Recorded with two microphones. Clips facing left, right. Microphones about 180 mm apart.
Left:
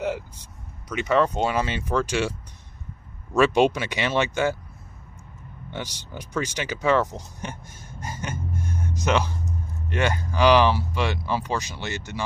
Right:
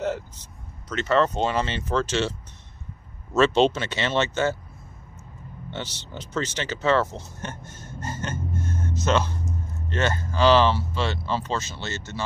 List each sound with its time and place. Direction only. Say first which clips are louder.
0.0 s speech: even; 10° left (ahead or behind)
3.3 s speech: even; 10° left (ahead or behind)
5.7 s speech: even; 10° left (ahead or behind)